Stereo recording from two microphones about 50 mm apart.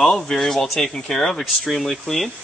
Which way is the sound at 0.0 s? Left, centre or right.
Centre.